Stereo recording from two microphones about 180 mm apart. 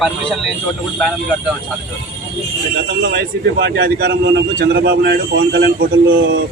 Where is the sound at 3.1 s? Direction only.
70° right (ahead or behind).